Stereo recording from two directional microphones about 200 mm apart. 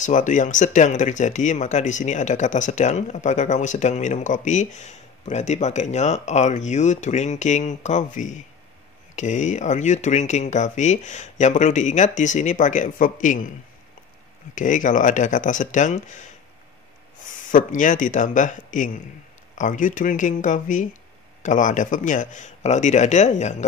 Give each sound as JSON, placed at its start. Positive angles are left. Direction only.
{"t": 0.0, "sound": "speech", "side_deg": 40}
{"t": 14.5, "sound": "speech", "side_deg": 40}
{"t": 17.5, "sound": "speech", "side_deg": 40}